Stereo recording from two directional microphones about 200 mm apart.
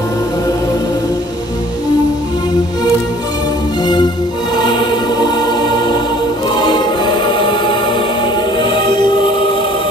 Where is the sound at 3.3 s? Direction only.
20° left (ahead or behind).